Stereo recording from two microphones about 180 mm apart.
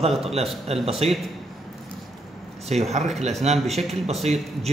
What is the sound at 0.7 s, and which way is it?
Speech, 35° right (ahead or behind).